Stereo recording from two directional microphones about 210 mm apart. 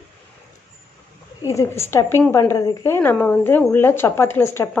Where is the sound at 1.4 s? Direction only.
15° left (ahead or behind).